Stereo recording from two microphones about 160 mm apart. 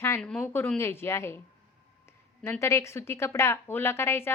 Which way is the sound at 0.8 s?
15° left (ahead or behind).